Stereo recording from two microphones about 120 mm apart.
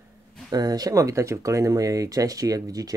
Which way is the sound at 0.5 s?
35° right (ahead or behind).